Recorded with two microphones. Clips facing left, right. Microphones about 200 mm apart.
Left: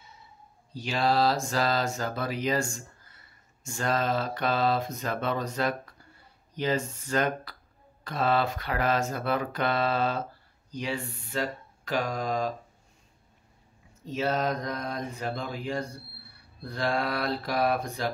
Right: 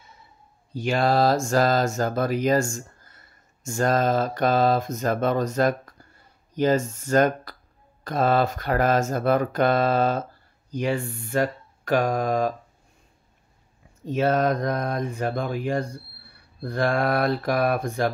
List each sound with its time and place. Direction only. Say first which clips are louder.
0.7 s mantra: right 5 dB; 50° right (ahead or behind)
14.0 s mantra: right 6 dB; 55° right (ahead or behind)